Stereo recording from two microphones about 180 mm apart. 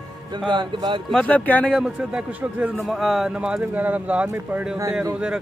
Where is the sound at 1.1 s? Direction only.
5° left (ahead or behind).